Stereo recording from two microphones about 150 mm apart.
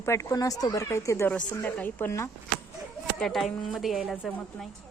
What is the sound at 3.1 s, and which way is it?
A woman's voice, centre (ahead or behind).